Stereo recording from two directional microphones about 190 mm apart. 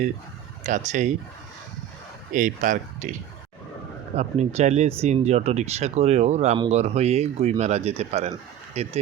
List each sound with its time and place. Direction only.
0.6 s speech: 40° right (ahead or behind)
2.3 s speech: 45° right (ahead or behind)
4.2 s speech: 35° right (ahead or behind)